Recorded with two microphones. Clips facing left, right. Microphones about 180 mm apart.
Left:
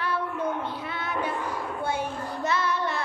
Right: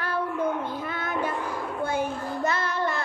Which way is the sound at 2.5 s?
50° right (ahead or behind).